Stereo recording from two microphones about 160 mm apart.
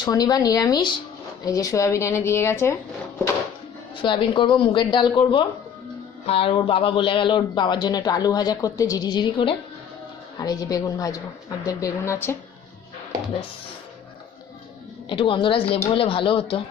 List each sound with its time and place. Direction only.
0.0 s speech: 25° left (ahead or behind)
4.0 s speech: 30° left (ahead or behind)
15.1 s speech: 30° left (ahead or behind)